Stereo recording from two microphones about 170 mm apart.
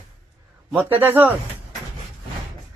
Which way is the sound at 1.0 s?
10° right (ahead or behind).